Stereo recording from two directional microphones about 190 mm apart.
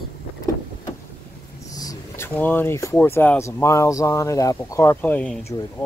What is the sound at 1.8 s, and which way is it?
Speech, 15° left (ahead or behind).